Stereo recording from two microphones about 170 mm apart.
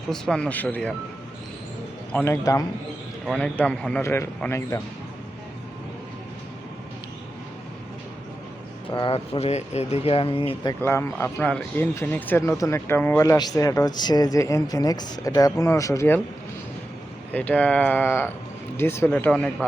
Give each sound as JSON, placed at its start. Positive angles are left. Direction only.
{"t": 0.1, "sound": "speech", "side_deg": 5}
{"t": 2.1, "sound": "speech", "side_deg": 15}
{"t": 3.2, "sound": "speech", "side_deg": 5}
{"t": 8.9, "sound": "speech", "side_deg": 30}
{"t": 10.8, "sound": "speech", "side_deg": 15}
{"t": 17.3, "sound": "speech", "side_deg": 10}